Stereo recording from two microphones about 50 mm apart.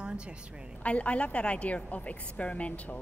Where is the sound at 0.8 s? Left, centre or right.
Left.